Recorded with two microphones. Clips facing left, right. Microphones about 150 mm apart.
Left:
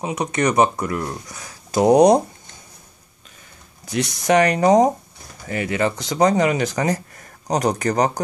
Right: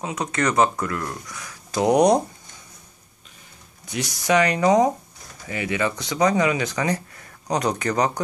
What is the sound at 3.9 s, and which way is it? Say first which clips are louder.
Speech: left 3 dB; 45° left (ahead or behind).